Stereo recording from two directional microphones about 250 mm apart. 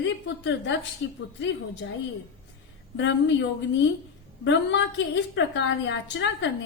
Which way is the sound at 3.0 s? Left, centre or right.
Left.